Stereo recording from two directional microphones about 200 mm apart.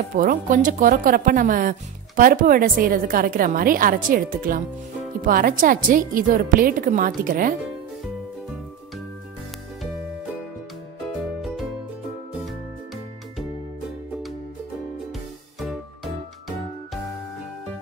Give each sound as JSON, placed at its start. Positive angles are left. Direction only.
{"t": 0.1, "sound": "speech", "side_deg": -40}
{"t": 11.4, "sound": "music", "side_deg": 0}
{"t": 15.6, "sound": "music", "side_deg": 0}